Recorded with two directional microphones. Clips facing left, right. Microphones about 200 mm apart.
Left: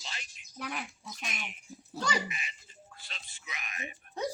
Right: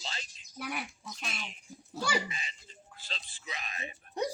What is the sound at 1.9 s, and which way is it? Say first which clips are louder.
Speech: even; 5° right (ahead or behind).